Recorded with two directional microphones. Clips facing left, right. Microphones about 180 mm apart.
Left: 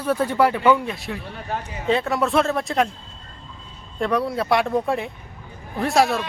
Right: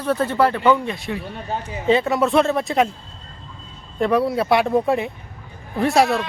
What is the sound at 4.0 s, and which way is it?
Speech, centre (ahead or behind).